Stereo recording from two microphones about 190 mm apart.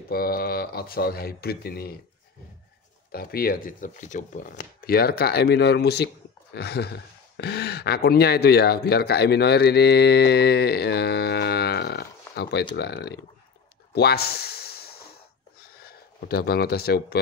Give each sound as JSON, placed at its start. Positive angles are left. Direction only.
{"t": 0.1, "sound": "speech", "side_deg": 50}
{"t": 3.1, "sound": "speech", "side_deg": 55}
{"t": 13.9, "sound": "snort", "side_deg": 55}
{"t": 15.7, "sound": "speech", "side_deg": 55}